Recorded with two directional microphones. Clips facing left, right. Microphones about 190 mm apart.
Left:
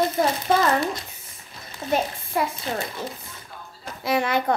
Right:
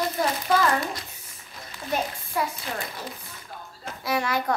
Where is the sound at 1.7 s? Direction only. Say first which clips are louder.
Left 4 dB; 25° left (ahead or behind).